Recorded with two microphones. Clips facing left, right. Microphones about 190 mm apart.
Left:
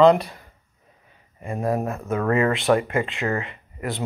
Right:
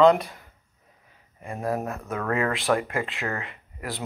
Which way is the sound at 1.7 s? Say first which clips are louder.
Left 5 dB; 15° left (ahead or behind).